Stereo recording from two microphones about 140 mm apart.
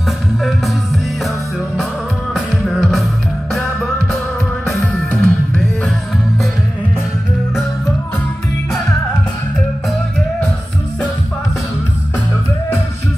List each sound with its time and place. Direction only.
0.4 s music: centre (ahead or behind)
2.3 s music: centre (ahead or behind)